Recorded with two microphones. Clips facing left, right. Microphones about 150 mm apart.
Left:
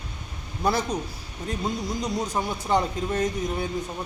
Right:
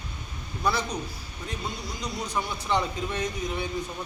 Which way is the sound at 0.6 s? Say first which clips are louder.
Left 3 dB; 50° left (ahead or behind).